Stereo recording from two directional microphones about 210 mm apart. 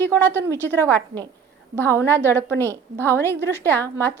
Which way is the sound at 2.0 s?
10° left (ahead or behind).